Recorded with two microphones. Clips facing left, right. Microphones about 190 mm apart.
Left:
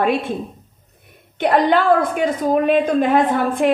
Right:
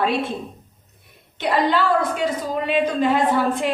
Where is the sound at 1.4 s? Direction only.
55° left (ahead or behind).